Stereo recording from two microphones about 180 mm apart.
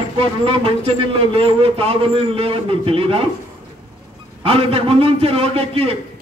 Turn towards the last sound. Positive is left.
turn(degrees=-35)  # may be behind; listen again after turning